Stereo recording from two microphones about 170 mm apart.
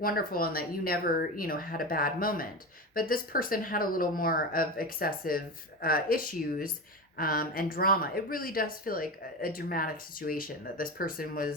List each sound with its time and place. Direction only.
0.0 s speech: 60° left (ahead or behind)